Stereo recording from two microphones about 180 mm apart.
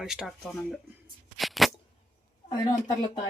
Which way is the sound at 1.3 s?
Centre (ahead or behind).